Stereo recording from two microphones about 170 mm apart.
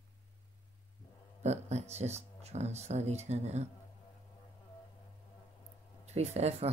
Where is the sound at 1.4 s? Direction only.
40° right (ahead or behind).